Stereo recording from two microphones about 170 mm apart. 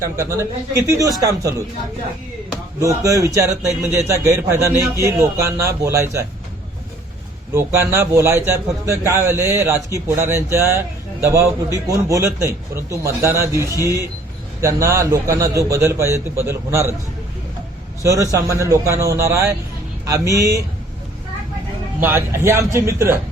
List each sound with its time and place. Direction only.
0.0 s a man's voice: 15° right (ahead or behind)
2.8 s a man's voice: 20° right (ahead or behind)
7.5 s a man's voice: 15° right (ahead or behind)
18.0 s a man's voice: 20° right (ahead or behind)
22.0 s a man's voice: 15° right (ahead or behind)